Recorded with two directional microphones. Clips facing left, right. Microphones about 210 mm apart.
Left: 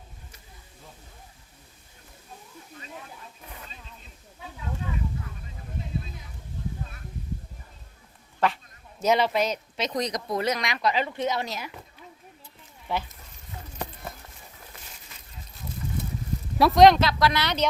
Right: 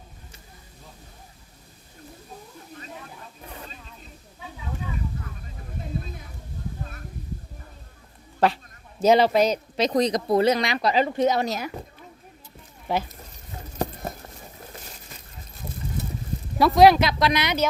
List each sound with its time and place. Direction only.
8.4 s speech: 35° right (ahead or behind)
12.9 s speech: 40° right (ahead or behind)
13.7 s a sound: 40° right (ahead or behind)
16.6 s speech: centre (ahead or behind)